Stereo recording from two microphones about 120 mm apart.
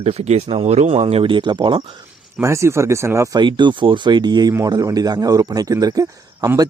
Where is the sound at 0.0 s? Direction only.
60° right (ahead or behind); by 1.8 s 40° right (ahead or behind).